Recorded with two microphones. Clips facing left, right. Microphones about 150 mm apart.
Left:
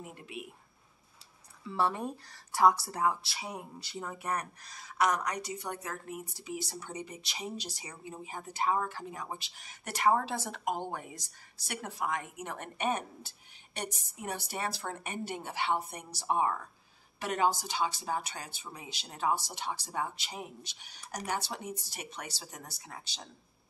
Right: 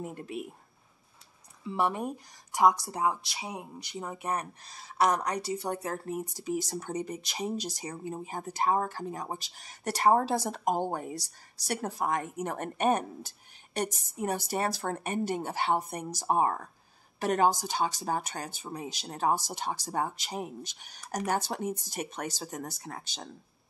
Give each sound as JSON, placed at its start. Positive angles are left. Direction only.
{"t": 0.0, "sound": "speech", "side_deg": -40}
{"t": 1.6, "sound": "speech", "side_deg": -20}